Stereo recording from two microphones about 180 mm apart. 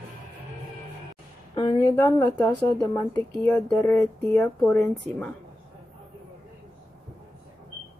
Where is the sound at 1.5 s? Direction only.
20° left (ahead or behind).